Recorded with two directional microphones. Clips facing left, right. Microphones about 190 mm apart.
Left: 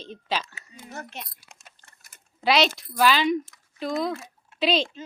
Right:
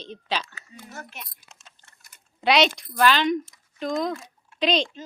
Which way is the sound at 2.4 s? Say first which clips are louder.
Right 1 dB; centre (ahead or behind).